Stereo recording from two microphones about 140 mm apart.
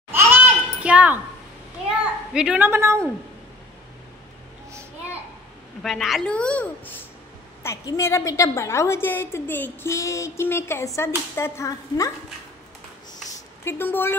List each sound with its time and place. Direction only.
0.8 s a sound: 10° right (ahead or behind)
1.9 s a child's voice: 5° right (ahead or behind)
5.8 s a woman's voice: centre (ahead or behind)
7.6 s a woman's voice: 25° left (ahead or behind)
13.7 s a woman's voice: 15° left (ahead or behind)